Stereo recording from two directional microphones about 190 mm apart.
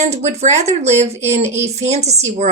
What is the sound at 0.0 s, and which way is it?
Speech, 35° right (ahead or behind).